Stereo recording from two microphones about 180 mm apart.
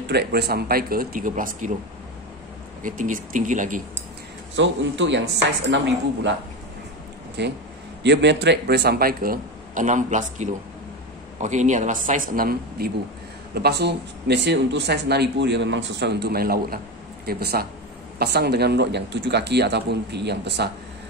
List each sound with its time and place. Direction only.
0.0 s speech: 65° right (ahead or behind); by 1.7 s 45° right (ahead or behind)
2.8 s speech: 45° right (ahead or behind)
4.6 s a man's voice: 90° right
7.4 s speech: 70° right (ahead or behind); by 12.9 s 55° right (ahead or behind)
13.6 s speech: 65° right (ahead or behind)